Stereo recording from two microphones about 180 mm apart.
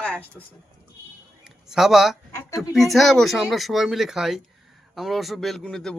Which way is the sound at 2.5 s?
Centre (ahead or behind).